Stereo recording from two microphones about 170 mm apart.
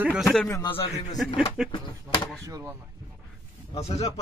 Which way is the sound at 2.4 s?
15° right (ahead or behind).